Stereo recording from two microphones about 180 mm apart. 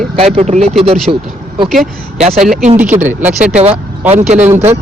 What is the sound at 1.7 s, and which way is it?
A man's voice, centre (ahead or behind).